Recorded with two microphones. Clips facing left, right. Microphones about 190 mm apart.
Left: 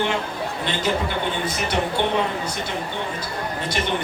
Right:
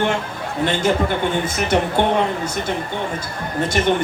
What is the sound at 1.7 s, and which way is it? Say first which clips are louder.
Speech: right 6 dB; 50° right (ahead or behind).